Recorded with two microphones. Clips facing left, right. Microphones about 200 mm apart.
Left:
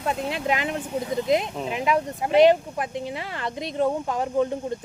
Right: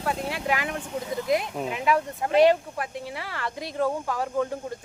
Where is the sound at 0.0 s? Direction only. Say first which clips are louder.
Left 2 dB; 20° left (ahead or behind).